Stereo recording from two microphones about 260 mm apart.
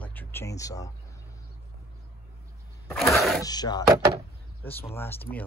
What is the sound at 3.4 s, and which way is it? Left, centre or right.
Speech, centre.